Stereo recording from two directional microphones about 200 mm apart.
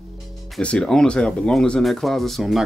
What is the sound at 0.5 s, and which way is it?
Speech, 5° left (ahead or behind).